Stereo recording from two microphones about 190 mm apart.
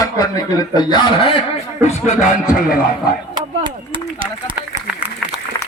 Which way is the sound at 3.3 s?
25° right (ahead or behind).